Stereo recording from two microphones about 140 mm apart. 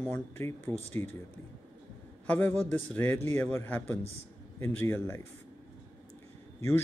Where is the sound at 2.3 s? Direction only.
10° left (ahead or behind).